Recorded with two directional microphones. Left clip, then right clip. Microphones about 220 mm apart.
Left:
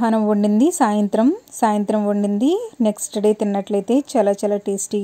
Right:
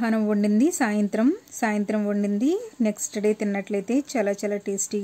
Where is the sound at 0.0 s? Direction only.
10° left (ahead or behind).